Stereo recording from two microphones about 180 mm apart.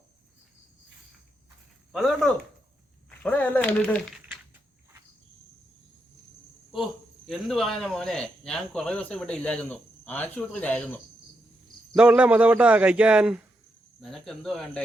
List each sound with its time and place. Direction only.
1.9 s speech: centre (ahead or behind)
7.3 s speech: centre (ahead or behind)
11.9 s a man's voice: 5° right (ahead or behind)